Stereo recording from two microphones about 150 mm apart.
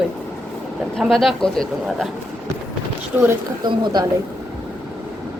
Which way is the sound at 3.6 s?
30° right (ahead or behind).